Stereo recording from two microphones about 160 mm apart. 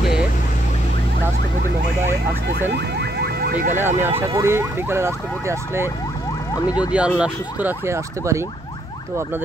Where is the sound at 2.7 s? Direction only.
90° right.